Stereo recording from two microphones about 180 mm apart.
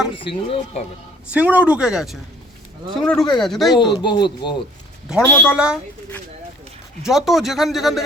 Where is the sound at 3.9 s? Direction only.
25° left (ahead or behind).